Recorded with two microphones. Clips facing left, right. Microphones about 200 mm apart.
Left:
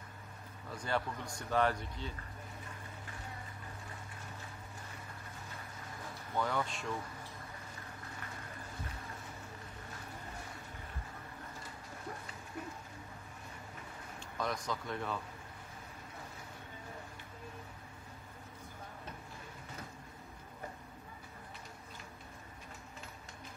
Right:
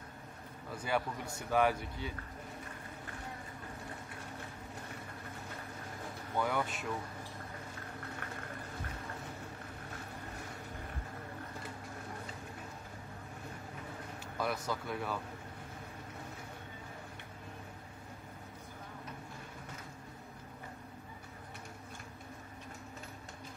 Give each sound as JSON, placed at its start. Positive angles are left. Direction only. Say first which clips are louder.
{"t": 0.7, "sound": "a man's voice", "louder": "right 2 dB", "side_deg": -5}
{"t": 6.3, "sound": "a man's voice", "louder": "right 1 dB", "side_deg": -10}
{"t": 14.4, "sound": "a man's voice", "louder": "right 2 dB", "side_deg": -5}